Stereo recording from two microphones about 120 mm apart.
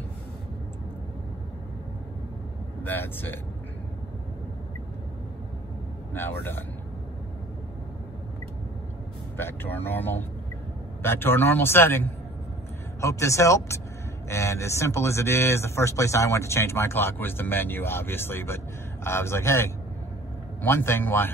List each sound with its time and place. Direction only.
2.8 s speech: 15° left (ahead or behind)
6.1 s speech: 20° left (ahead or behind)
9.4 s speech: 20° left (ahead or behind)